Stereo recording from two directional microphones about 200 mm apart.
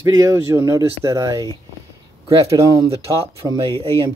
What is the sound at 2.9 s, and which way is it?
Speech, 25° right (ahead or behind).